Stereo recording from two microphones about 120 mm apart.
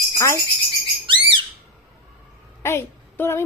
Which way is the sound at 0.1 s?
25° left (ahead or behind).